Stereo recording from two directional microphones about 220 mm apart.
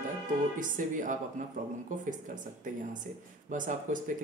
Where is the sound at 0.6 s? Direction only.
35° right (ahead or behind).